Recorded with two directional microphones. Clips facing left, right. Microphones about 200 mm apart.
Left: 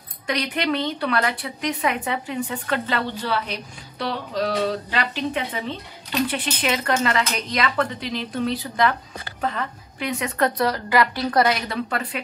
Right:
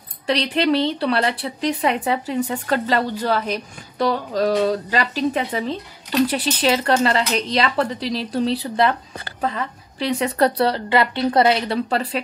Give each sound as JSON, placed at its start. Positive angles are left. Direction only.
{"t": 0.3, "sound": "a woman's voice", "side_deg": -30}
{"t": 9.9, "sound": "a woman's voice", "side_deg": -30}